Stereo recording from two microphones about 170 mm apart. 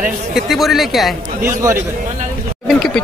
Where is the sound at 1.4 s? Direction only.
15° right (ahead or behind).